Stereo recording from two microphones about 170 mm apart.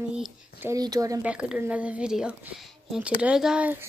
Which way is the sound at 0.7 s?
20° right (ahead or behind).